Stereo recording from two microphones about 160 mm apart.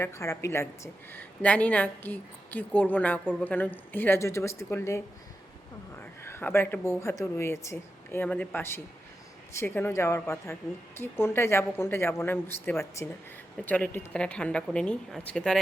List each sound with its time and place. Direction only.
0.0 s a woman's voice: 15° left (ahead or behind)